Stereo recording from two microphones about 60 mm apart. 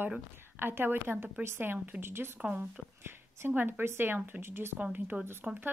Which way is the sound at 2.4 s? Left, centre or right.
Centre.